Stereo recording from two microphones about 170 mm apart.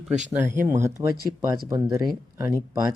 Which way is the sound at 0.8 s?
20° right (ahead or behind).